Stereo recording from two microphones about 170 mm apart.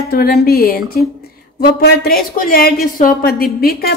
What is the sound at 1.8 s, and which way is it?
A woman's voice, 65° left (ahead or behind).